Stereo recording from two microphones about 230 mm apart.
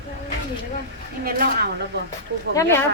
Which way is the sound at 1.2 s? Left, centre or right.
Right.